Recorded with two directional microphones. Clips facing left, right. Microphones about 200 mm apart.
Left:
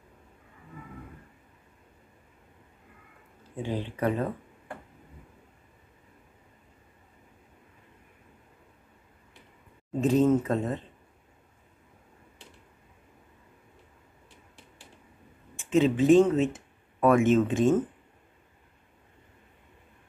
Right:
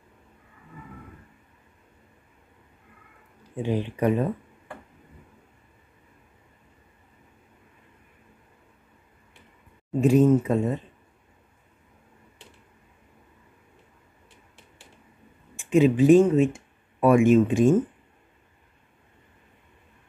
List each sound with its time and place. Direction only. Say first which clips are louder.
3.6 s speech: right 5 dB; 15° right (ahead or behind)
9.9 s speech: right 4 dB; 15° right (ahead or behind)
15.7 s speech: right 3 dB; 15° right (ahead or behind)